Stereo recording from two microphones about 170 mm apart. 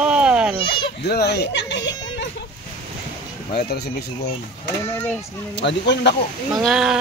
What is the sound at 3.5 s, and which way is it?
Speech, 75° left (ahead or behind).